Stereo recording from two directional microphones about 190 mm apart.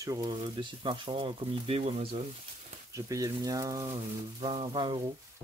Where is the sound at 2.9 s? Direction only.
15° right (ahead or behind).